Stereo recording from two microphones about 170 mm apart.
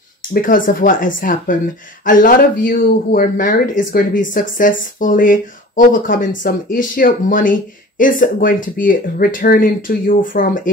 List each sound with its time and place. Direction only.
0.3 s speech: 55° left (ahead or behind)